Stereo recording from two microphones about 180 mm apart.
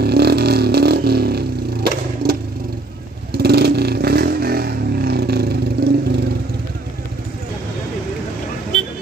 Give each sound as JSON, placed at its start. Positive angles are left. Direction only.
{"t": 0.0, "sound": "vehicle", "side_deg": -65}